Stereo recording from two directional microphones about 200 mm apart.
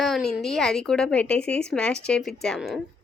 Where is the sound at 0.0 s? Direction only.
Centre (ahead or behind).